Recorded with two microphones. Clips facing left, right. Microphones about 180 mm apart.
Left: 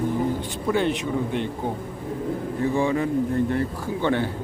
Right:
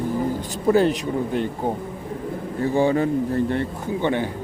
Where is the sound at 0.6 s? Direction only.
40° right (ahead or behind).